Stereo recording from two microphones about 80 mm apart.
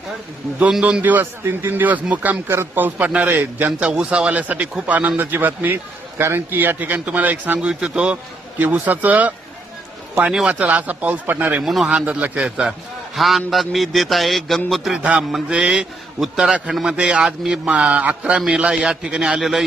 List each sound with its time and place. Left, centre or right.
0.7 s a man's voice: centre
11.6 s music: centre
11.9 s a man's voice: centre
13.1 s music: centre
14.9 s a man's voice: centre